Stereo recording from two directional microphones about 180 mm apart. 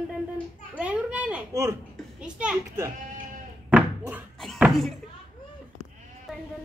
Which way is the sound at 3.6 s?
10° right (ahead or behind).